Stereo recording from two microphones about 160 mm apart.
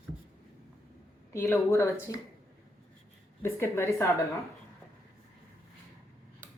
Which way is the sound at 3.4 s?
15° left (ahead or behind).